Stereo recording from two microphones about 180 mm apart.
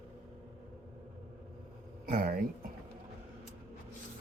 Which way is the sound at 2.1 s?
50° right (ahead or behind).